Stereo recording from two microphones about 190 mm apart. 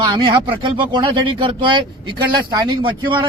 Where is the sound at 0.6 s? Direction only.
25° right (ahead or behind).